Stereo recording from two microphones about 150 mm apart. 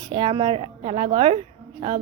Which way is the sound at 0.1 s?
35° right (ahead or behind).